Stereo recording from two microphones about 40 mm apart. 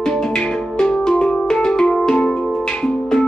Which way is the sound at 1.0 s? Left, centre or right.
Centre.